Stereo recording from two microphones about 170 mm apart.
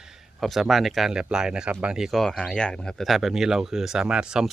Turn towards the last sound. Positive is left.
turn(degrees=-5)  # may be behind; listen again after turning